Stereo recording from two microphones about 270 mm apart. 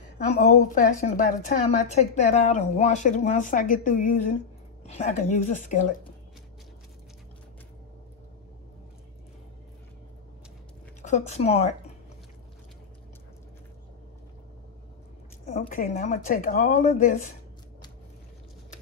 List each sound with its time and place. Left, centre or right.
0.3 s speech: left
11.0 s speech: left
15.4 s speech: left